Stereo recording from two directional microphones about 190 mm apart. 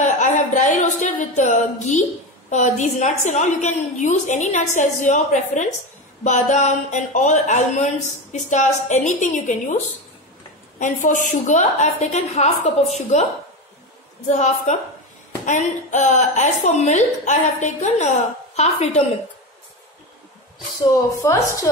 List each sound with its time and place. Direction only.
0.0 s a woman's voice: 40° left (ahead or behind)
10.8 s a woman's voice: 40° left (ahead or behind)
14.3 s a woman's voice: 40° left (ahead or behind)
21.2 s a woman's voice: 15° left (ahead or behind)